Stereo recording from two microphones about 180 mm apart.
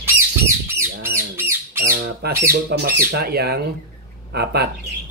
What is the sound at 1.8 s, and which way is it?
Squawk, 55° right (ahead or behind).